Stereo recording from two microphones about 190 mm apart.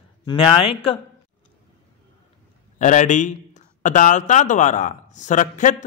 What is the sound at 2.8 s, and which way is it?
A man's voice, 40° left (ahead or behind).